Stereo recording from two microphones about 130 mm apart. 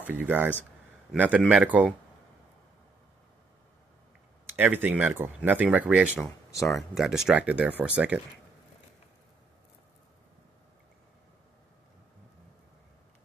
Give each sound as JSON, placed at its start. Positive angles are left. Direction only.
{"t": 0.0, "sound": "speech", "side_deg": -15}
{"t": 4.6, "sound": "speech", "side_deg": -15}